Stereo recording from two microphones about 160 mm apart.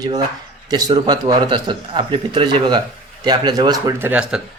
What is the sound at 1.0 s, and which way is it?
Speech, 25° right (ahead or behind).